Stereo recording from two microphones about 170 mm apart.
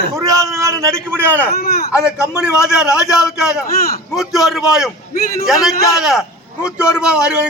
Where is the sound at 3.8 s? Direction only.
60° left (ahead or behind).